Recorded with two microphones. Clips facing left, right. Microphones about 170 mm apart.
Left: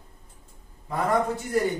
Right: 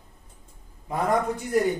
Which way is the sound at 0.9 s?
15° right (ahead or behind).